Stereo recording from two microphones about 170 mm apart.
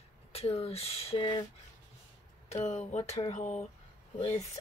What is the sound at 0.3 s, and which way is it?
Speech, 35° left (ahead or behind).